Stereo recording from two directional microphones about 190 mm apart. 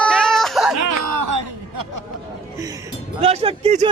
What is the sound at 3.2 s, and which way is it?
Speech, 30° right (ahead or behind).